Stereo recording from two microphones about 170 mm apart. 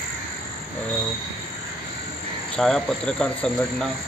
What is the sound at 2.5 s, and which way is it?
Speech, 5° left (ahead or behind).